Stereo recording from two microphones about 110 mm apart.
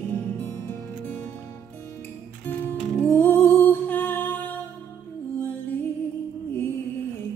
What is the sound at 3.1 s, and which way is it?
Music, 20° left (ahead or behind).